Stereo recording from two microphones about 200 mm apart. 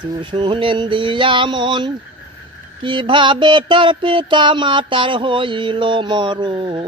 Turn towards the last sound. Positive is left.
turn(degrees=-25)  # may be behind; listen again after turning